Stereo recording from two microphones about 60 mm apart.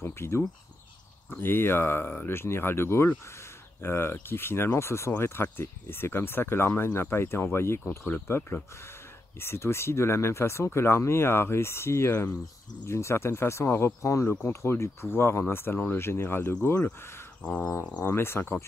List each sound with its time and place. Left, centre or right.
0.0 s speech: left
17.4 s a sound: left
18.0 s speech: left